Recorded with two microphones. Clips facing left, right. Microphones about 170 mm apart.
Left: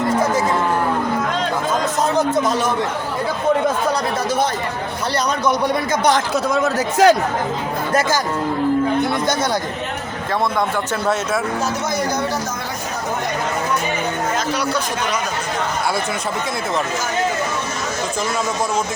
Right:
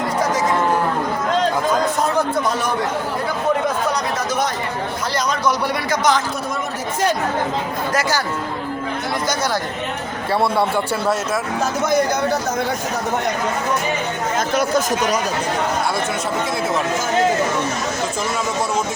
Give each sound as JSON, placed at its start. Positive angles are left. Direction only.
{"t": 6.5, "sound": "speech", "side_deg": 85}
{"t": 14.5, "sound": "speech", "side_deg": -50}